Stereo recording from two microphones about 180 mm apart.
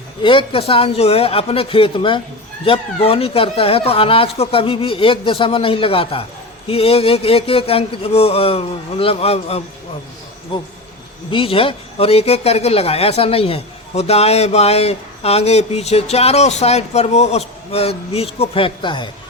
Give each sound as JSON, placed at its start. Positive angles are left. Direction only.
{"t": 0.2, "sound": "speech", "side_deg": 30}
{"t": 11.3, "sound": "a man's voice", "side_deg": 30}